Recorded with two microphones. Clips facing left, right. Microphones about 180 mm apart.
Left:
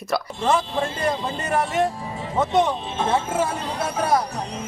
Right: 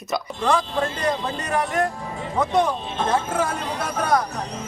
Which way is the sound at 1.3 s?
5° left (ahead or behind).